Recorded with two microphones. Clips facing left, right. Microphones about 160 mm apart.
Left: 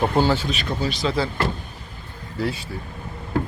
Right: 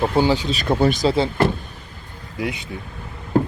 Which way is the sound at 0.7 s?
55° right (ahead or behind).